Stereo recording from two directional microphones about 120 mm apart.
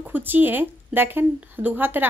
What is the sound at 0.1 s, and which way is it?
A woman's voice, 15° right (ahead or behind).